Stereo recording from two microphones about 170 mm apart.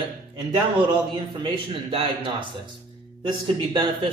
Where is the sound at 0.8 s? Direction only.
30° right (ahead or behind).